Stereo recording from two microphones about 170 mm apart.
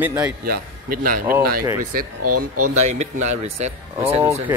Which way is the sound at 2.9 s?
40° right (ahead or behind).